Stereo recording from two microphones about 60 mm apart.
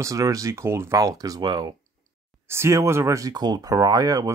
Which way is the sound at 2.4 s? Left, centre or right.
Right.